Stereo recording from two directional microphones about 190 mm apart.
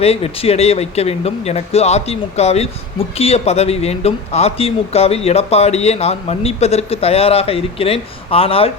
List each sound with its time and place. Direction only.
0.0 s speech: 30° left (ahead or behind)